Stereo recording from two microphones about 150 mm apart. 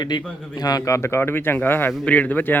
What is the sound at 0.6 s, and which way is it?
Speech, 25° left (ahead or behind).